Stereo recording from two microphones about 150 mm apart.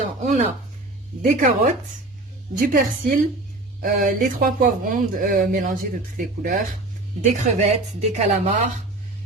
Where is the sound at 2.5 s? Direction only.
65° right (ahead or behind).